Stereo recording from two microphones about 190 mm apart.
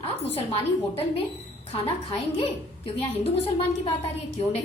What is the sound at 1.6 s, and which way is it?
A woman's voice, 30° left (ahead or behind).